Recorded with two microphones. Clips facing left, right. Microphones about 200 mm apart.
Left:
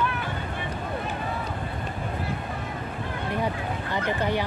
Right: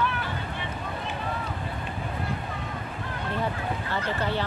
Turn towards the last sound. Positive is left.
turn(degrees=15)  # may be behind; listen again after turning